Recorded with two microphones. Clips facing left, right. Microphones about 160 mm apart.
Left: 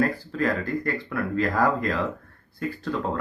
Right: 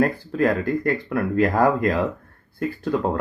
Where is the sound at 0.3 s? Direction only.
50° right (ahead or behind).